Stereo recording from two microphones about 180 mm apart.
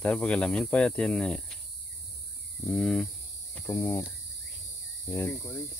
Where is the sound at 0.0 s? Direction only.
5° left (ahead or behind).